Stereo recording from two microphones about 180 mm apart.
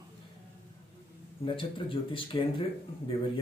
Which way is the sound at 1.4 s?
30° left (ahead or behind).